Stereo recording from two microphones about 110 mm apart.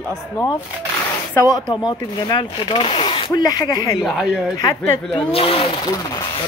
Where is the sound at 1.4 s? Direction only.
35° left (ahead or behind); by 3.3 s 50° left (ahead or behind).